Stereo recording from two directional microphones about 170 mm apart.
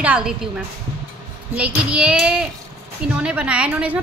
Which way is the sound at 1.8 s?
5° right (ahead or behind).